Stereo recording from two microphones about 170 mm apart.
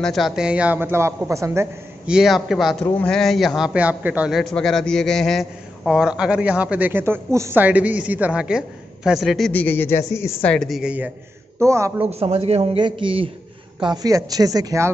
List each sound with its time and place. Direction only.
0.0 s a man's voice: centre (ahead or behind); by 1.7 s 15° right (ahead or behind)
2.0 s a man's voice: 5° right (ahead or behind)
11.6 s a man's voice: 15° right (ahead or behind)
12.1 s a man's voice: 35° right (ahead or behind); by 14.9 s 20° right (ahead or behind)